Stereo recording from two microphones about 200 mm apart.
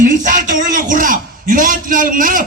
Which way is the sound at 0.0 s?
40° right (ahead or behind).